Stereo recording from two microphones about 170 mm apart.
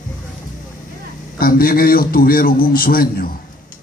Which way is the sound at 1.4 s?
60° left (ahead or behind).